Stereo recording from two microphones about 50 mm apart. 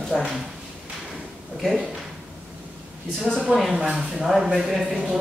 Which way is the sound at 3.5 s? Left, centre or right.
Centre.